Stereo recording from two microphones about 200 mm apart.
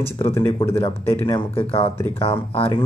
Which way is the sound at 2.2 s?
30° left (ahead or behind).